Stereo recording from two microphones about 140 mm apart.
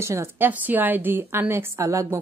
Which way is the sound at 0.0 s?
20° right (ahead or behind).